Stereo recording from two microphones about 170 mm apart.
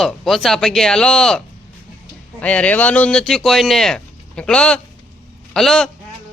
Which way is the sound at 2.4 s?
10° left (ahead or behind).